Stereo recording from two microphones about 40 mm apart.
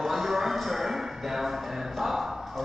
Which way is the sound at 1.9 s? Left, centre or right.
Centre.